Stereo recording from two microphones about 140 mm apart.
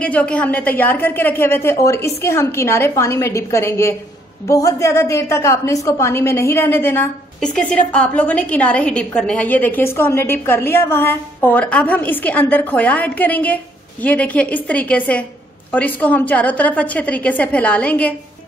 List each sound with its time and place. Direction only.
0.0 s a woman's voice: 10° left (ahead or behind)
7.3 s a woman's voice: 5° left (ahead or behind)